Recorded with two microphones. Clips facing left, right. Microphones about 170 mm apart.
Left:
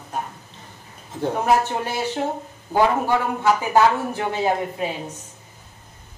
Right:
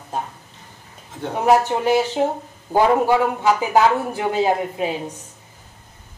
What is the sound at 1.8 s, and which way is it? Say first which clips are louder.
Speech: right 7 dB; 15° right (ahead or behind).